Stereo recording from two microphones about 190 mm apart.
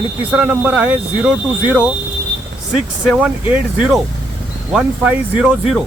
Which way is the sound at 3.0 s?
5° right (ahead or behind).